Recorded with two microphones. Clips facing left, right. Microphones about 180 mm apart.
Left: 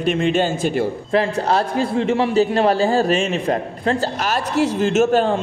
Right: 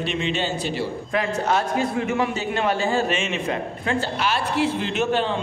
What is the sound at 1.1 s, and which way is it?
A man's voice, 35° left (ahead or behind).